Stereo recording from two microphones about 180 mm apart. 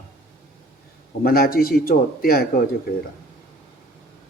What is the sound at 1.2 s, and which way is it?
A man's voice, 55° left (ahead or behind).